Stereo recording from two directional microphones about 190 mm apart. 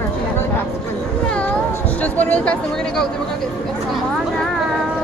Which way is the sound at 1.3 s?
10° left (ahead or behind).